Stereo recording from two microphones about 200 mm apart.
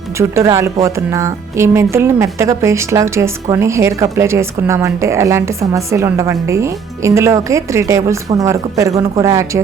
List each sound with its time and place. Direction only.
0.2 s a woman's voice: 15° right (ahead or behind)